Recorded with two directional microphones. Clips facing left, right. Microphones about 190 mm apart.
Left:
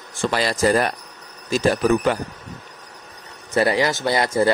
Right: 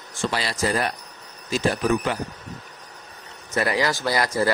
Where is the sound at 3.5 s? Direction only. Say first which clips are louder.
Left 4 dB; 30° left (ahead or behind).